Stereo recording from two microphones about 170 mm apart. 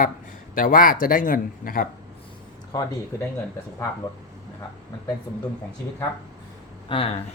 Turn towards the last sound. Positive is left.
turn(degrees=35)  # may be behind; listen again after turning